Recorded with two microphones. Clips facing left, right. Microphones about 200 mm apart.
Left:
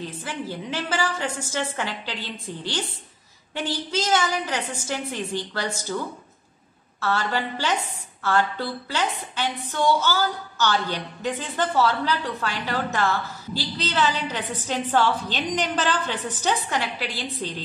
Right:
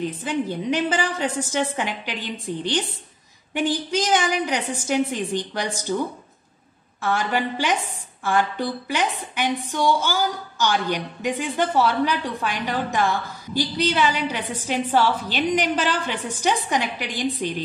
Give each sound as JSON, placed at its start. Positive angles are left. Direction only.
{"t": 0.0, "sound": "a woman's voice", "side_deg": -20}
{"t": 7.0, "sound": "a woman's voice", "side_deg": -15}